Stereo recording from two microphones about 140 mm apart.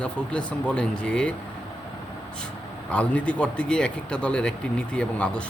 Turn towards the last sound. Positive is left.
turn(degrees=5)  # may be behind; listen again after turning